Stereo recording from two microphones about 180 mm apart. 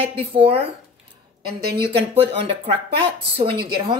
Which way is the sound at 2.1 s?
30° right (ahead or behind).